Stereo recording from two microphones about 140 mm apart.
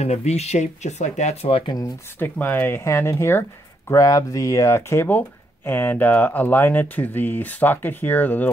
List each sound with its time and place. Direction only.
0.0 s speech: 55° left (ahead or behind)
2.1 s speech: 15° left (ahead or behind)